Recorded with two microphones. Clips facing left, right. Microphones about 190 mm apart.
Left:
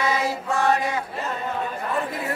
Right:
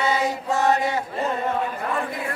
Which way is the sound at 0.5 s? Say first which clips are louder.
Right 1 dB; 20° right (ahead or behind).